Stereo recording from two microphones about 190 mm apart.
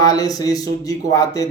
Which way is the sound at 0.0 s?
20° left (ahead or behind).